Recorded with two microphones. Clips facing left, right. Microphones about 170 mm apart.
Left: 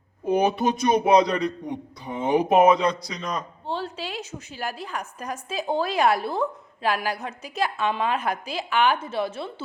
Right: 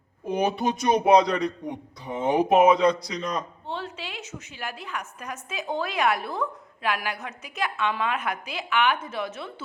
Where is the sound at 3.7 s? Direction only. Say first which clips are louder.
Left 5 dB; 35° left (ahead or behind).